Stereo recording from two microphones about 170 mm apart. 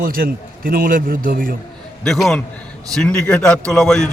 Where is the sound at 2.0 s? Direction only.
Centre (ahead or behind).